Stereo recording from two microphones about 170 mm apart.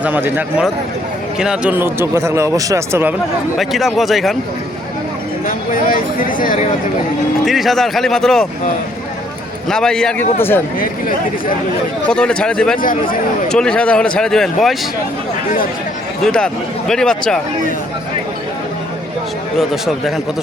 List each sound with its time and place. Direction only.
0.0 s speech: 10° right (ahead or behind)
3.6 s speech: centre (ahead or behind)
5.5 s speech: 55° left (ahead or behind)
7.4 s speech: centre (ahead or behind)
9.6 s speech: 5° left (ahead or behind)
12.0 s speech: 5° left (ahead or behind)
16.2 s speech: 5° left (ahead or behind)
19.5 s speech: centre (ahead or behind)